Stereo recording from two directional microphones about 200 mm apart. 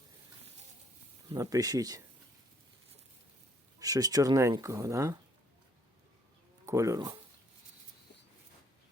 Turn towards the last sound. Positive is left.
turn(degrees=-15)  # may be behind; listen again after turning